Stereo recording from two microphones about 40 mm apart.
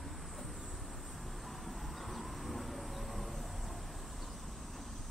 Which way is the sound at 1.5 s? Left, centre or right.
Centre.